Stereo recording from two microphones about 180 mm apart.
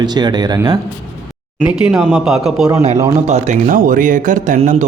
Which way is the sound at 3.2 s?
40° right (ahead or behind).